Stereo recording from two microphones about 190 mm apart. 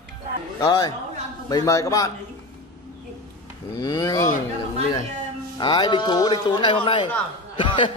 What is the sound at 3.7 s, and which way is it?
Speech, 20° left (ahead or behind).